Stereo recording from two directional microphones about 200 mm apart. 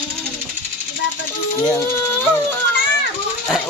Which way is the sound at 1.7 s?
10° left (ahead or behind).